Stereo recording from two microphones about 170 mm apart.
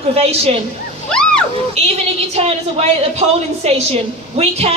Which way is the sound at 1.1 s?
5° left (ahead or behind).